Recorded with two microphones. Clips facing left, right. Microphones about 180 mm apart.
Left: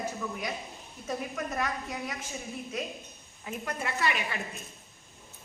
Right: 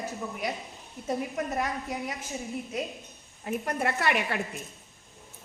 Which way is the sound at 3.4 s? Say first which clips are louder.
Right 6 dB; 55° right (ahead or behind).